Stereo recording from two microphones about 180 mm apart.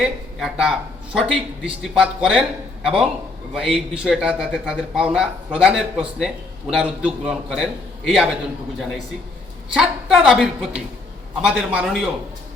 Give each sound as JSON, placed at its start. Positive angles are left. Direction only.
{"t": 0.0, "sound": "a man's voice", "side_deg": -5}
{"t": 9.7, "sound": "a man's voice", "side_deg": 0}